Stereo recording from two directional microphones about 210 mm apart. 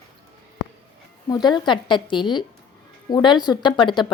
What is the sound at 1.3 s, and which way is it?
Speech, 20° left (ahead or behind).